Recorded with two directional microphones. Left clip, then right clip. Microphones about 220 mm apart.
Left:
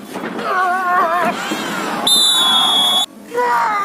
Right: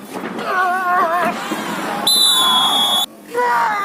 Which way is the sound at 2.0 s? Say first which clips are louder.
Left 1 dB; 10° left (ahead or behind).